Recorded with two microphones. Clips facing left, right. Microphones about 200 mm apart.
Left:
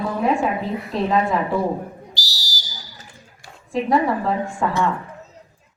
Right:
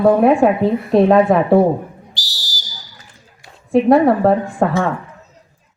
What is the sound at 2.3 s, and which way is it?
Whistle, 50° right (ahead or behind).